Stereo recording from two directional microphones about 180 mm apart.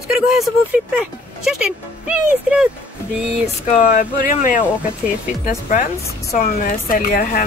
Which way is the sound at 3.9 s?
50° left (ahead or behind).